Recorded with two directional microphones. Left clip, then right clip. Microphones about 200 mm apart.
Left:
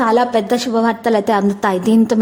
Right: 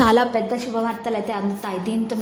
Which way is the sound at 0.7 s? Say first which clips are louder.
Left 10 dB; 40° left (ahead or behind).